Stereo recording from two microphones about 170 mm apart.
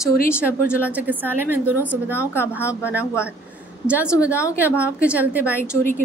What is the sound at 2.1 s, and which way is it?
Speech, 15° left (ahead or behind).